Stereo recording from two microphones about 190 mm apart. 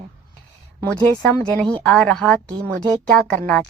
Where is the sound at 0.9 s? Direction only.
5° left (ahead or behind).